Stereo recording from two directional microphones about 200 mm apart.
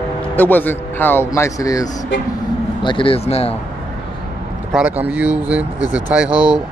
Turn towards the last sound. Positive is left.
turn(degrees=-5)  # may be behind; listen again after turning